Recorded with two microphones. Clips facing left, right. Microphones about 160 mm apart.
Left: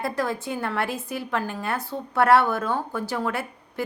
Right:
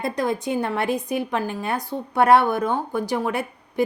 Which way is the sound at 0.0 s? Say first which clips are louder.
Right 3 dB; 20° right (ahead or behind).